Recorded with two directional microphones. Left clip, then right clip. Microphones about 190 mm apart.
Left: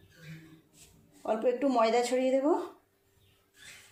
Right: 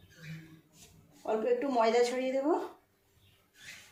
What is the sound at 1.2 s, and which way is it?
Speech, 55° left (ahead or behind).